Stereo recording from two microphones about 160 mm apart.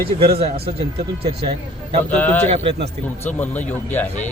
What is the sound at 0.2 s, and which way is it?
Speech, 40° right (ahead or behind).